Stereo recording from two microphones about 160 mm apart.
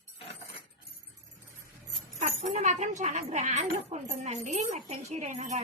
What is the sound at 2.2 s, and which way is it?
Speech, 45° right (ahead or behind).